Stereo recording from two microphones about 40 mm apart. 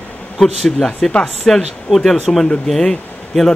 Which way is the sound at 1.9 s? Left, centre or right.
Centre.